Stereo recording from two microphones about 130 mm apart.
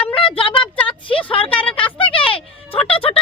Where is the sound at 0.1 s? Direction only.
45° left (ahead or behind).